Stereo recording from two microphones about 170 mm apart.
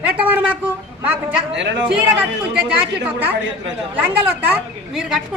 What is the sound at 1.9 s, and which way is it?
Speech, 5° right (ahead or behind).